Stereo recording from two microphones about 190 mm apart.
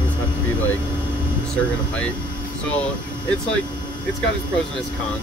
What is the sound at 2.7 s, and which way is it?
Speech, 5° left (ahead or behind).